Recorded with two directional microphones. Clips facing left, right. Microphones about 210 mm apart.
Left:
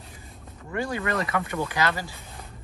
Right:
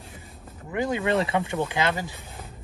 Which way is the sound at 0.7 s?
20° right (ahead or behind).